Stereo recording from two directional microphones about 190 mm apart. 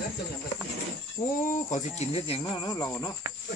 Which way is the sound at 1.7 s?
35° left (ahead or behind).